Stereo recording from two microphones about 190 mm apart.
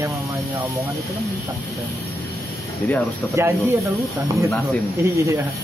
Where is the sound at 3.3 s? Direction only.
15° right (ahead or behind).